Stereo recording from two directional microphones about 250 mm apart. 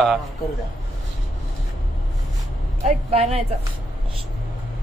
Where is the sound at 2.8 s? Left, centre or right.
Right.